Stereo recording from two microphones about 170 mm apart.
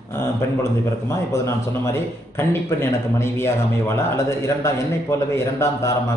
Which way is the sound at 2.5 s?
15° left (ahead or behind).